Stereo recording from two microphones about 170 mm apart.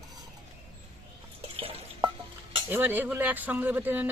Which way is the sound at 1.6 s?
30° right (ahead or behind).